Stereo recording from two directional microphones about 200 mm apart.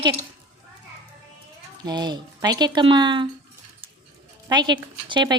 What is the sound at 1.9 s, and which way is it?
Speech, 20° right (ahead or behind).